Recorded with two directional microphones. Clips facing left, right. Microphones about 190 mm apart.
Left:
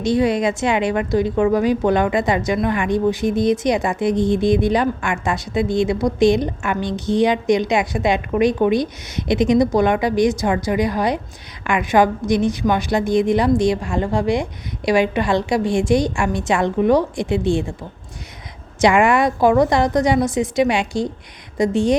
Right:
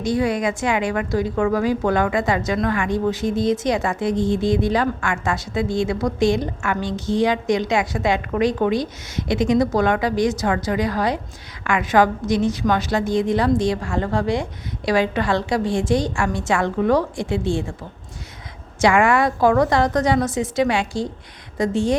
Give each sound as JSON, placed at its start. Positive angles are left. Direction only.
{"t": 0.0, "sound": "a woman's voice", "side_deg": 20}
{"t": 18.8, "sound": "a woman's voice", "side_deg": 20}